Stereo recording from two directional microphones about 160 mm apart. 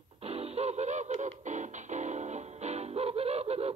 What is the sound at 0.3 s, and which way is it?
Music, 40° right (ahead or behind).